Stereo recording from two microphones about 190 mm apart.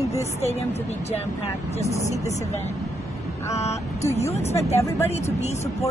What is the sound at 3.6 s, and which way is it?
Speech, 35° left (ahead or behind).